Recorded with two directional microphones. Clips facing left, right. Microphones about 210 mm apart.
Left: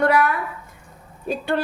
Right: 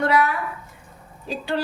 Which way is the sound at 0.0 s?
50° left (ahead or behind).